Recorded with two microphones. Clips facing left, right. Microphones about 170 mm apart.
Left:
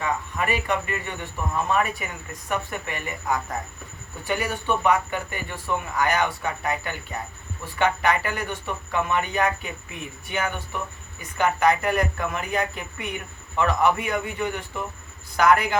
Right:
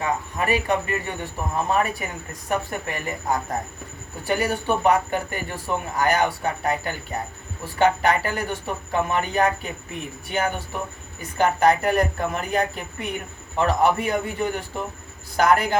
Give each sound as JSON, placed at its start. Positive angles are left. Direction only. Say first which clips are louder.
{"t": 0.0, "sound": "speech", "louder": "right 2 dB", "side_deg": -35}